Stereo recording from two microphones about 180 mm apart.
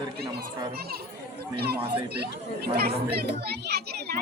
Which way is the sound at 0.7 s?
60° right (ahead or behind).